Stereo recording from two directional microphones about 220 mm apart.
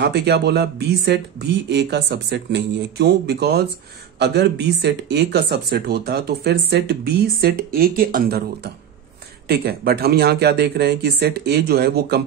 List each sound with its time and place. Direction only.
0.0 s speech: 50° right (ahead or behind)